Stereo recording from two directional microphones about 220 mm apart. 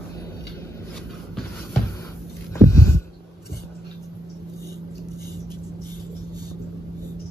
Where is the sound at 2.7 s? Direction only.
10° left (ahead or behind).